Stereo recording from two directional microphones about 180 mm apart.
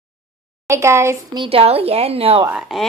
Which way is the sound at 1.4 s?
30° right (ahead or behind).